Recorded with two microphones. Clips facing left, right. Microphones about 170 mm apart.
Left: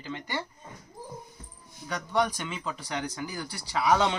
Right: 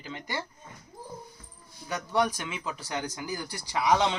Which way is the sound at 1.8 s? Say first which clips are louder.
Even; 10° right (ahead or behind).